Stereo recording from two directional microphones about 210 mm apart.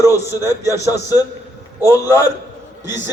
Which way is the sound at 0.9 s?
15° left (ahead or behind).